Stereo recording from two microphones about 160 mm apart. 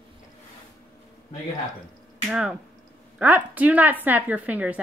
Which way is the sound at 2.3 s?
5° right (ahead or behind).